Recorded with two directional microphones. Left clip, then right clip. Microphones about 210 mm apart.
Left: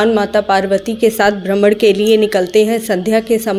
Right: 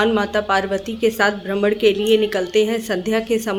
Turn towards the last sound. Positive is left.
turn(degrees=20)  # may be behind; listen again after turning